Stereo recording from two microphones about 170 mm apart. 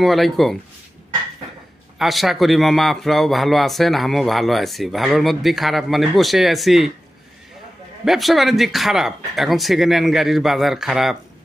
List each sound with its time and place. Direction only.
0.0 s speech: centre (ahead or behind)
2.0 s speech: centre (ahead or behind)
8.0 s speech: centre (ahead or behind)